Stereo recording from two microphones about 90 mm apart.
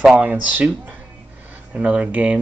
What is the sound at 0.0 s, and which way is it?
Speech, 5° right (ahead or behind).